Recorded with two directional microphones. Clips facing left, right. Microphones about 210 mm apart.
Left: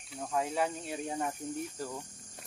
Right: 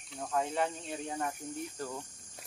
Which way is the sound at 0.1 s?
Centre (ahead or behind).